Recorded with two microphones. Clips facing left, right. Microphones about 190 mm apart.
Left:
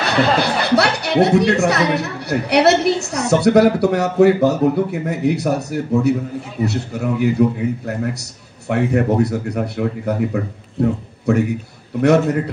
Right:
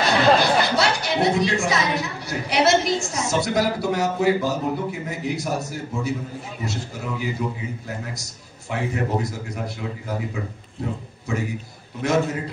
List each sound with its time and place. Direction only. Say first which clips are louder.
0.4 s a woman's voice: left 4 dB; 65° left (ahead or behind)